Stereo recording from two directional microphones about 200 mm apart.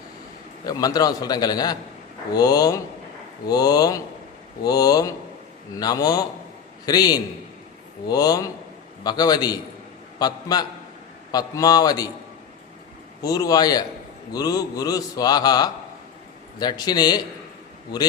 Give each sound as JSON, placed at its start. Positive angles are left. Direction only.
{"t": 0.6, "sound": "a man's voice", "side_deg": 20}
{"t": 13.2, "sound": "a man's voice", "side_deg": 20}